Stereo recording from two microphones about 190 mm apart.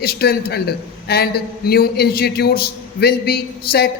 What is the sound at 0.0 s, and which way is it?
A man's voice, 55° left (ahead or behind).